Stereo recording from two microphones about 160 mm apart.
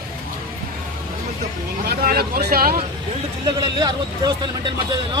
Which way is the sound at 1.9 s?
70° right (ahead or behind).